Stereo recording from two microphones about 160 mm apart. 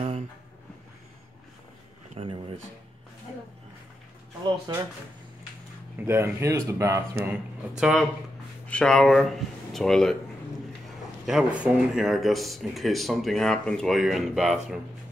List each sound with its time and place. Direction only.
2.2 s a sound: 35° right (ahead or behind)
4.7 s speech: 25° right (ahead or behind)
5.9 s speech: 15° right (ahead or behind)
7.2 s speech: 5° right (ahead or behind)
11.2 s speech: 5° right (ahead or behind)